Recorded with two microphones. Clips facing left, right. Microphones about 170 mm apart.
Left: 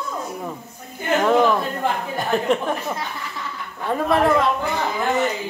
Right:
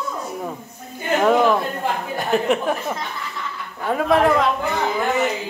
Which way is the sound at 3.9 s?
Centre (ahead or behind).